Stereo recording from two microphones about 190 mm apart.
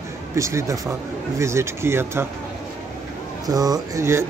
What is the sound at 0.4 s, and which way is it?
Speech, 15° right (ahead or behind).